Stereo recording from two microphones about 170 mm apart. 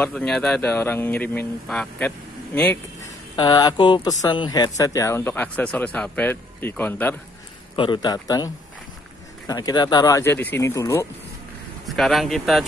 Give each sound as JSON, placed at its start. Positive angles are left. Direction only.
{"t": 0.0, "sound": "speech", "side_deg": 5}
{"t": 3.3, "sound": "speech", "side_deg": 25}
{"t": 7.7, "sound": "speech", "side_deg": 30}
{"t": 9.5, "sound": "speech", "side_deg": 20}
{"t": 11.8, "sound": "speech", "side_deg": 0}